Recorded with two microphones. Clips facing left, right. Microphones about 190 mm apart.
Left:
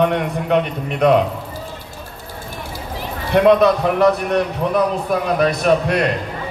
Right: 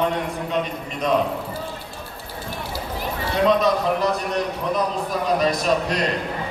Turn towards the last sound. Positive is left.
turn(degrees=60)  # may be behind; listen again after turning